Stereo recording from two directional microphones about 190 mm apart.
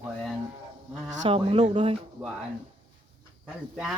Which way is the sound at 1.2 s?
30° right (ahead or behind).